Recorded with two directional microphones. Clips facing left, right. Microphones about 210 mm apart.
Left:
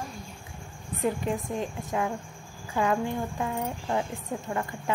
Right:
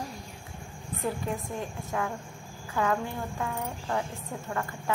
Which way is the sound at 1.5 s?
20° left (ahead or behind).